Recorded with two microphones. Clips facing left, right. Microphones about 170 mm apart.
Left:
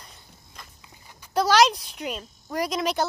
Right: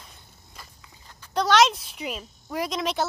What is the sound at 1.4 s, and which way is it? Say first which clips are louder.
Speech: left 1 dB; centre (ahead or behind).